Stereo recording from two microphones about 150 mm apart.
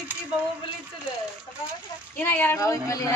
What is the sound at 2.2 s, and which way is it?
Speech, 15° left (ahead or behind).